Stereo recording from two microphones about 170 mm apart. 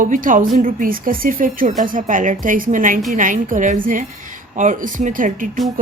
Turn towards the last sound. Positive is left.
turn(degrees=-50)  # may be behind; listen again after turning